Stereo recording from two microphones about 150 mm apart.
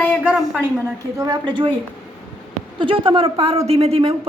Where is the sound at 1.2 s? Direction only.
25° right (ahead or behind).